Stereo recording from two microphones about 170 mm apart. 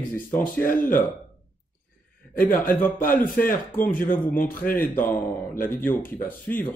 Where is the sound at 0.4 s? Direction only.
55° left (ahead or behind).